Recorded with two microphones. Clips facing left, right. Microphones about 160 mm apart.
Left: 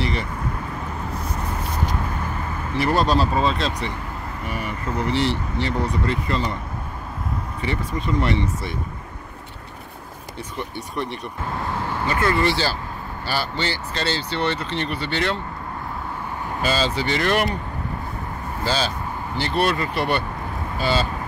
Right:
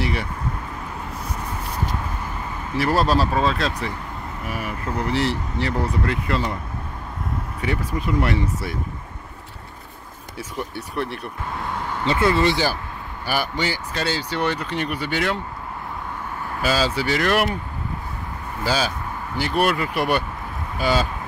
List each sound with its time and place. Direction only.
0.0 s vehicle: 5° right (ahead or behind)
2.8 s speech: centre (ahead or behind)
7.6 s speech: 5° right (ahead or behind)
10.6 s speech: 5° right (ahead or behind)
12.4 s speech: 15° right (ahead or behind)
16.6 s speech: 5° right (ahead or behind)
18.6 s speech: 10° right (ahead or behind)